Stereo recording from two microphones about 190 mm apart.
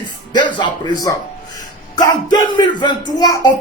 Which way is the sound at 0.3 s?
20° left (ahead or behind).